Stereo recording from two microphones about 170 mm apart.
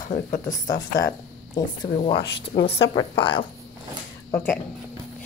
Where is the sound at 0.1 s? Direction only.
50° left (ahead or behind).